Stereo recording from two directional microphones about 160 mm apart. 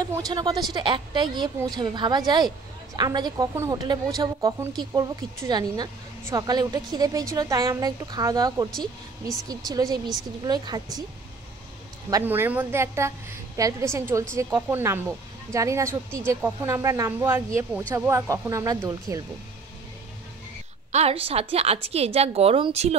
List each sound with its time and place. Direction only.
0.0 s a woman's voice: 25° right (ahead or behind)
9.7 s a woman's voice: 25° right (ahead or behind)
12.1 s a woman's voice: 15° right (ahead or behind)
20.9 s a woman's voice: 40° right (ahead or behind)